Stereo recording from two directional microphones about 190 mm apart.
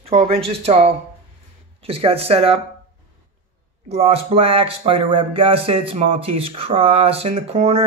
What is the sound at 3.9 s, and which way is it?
Speech, 30° right (ahead or behind).